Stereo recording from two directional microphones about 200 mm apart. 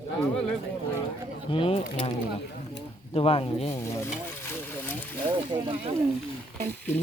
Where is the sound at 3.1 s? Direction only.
25° left (ahead or behind).